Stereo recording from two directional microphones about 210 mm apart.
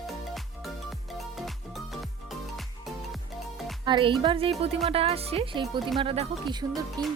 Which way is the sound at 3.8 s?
20° right (ahead or behind).